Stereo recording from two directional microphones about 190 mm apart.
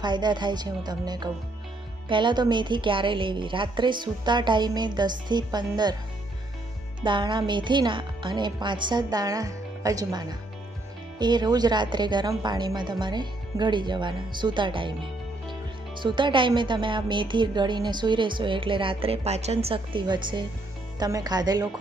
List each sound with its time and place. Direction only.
0.0 s a woman's voice: 25° right (ahead or behind)
7.0 s a woman's voice: 25° right (ahead or behind)
16.0 s a woman's voice: 25° right (ahead or behind)